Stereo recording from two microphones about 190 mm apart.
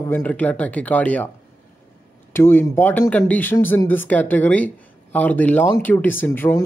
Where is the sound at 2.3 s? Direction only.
10° left (ahead or behind).